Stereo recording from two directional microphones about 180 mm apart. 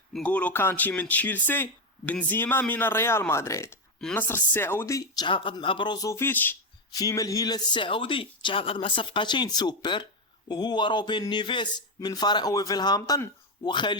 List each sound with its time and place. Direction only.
0.1 s speech: 5° left (ahead or behind); by 13.9 s 25° left (ahead or behind)